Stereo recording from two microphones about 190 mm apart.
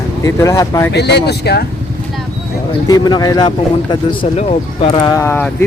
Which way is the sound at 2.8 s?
20° left (ahead or behind).